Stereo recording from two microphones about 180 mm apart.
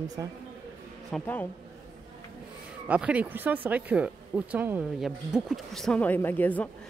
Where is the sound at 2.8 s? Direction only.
5° right (ahead or behind).